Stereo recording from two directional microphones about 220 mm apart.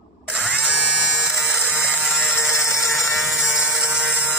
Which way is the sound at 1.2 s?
5° right (ahead or behind).